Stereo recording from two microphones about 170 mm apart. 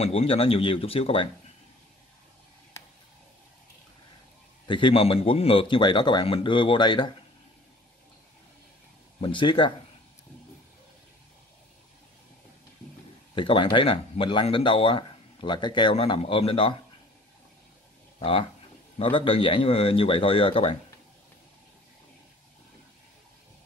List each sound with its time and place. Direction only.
0.0 s speech: 35° left (ahead or behind)
4.6 s a man's voice: 30° left (ahead or behind)
9.2 s a man's voice: 30° left (ahead or behind)
13.3 s speech: 30° left (ahead or behind)
18.9 s speech: 30° left (ahead or behind)